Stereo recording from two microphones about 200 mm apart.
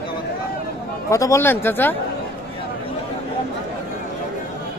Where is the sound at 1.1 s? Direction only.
15° left (ahead or behind).